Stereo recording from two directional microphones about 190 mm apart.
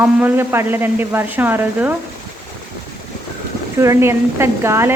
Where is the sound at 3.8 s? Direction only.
15° right (ahead or behind).